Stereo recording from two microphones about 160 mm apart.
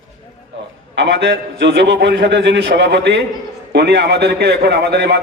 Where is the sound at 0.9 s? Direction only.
90° right.